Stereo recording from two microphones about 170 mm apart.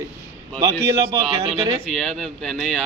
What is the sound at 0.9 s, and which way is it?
Speech, 20° right (ahead or behind).